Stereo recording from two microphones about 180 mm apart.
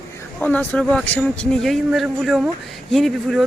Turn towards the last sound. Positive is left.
turn(degrees=0)  # may be behind; listen again after turning